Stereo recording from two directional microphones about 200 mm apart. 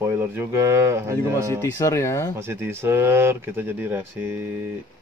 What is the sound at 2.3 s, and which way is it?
Speech, 10° right (ahead or behind).